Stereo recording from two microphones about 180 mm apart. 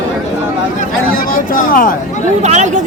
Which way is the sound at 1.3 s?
50° left (ahead or behind).